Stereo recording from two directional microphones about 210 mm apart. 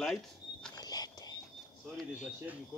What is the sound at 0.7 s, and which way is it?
Walk, 20° left (ahead or behind).